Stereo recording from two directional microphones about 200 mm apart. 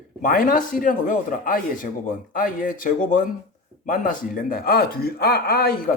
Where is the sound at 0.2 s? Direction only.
45° left (ahead or behind).